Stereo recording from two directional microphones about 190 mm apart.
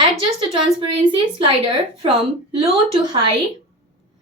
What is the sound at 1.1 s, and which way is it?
A woman's voice, 30° right (ahead or behind).